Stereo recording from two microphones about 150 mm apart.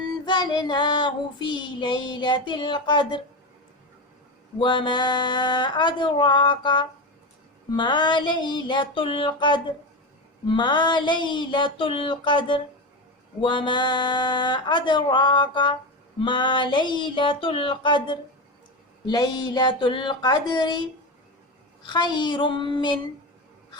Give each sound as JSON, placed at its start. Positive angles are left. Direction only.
{"t": 0.3, "sound": "child singing", "side_deg": 30}
{"t": 4.5, "sound": "child singing", "side_deg": 30}
{"t": 19.0, "sound": "speech", "side_deg": 25}
{"t": 21.8, "sound": "child singing", "side_deg": 30}